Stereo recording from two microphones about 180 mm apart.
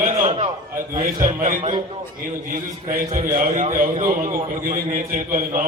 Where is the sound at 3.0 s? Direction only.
45° right (ahead or behind).